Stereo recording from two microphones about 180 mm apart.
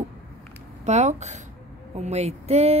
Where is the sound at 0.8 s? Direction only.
40° right (ahead or behind).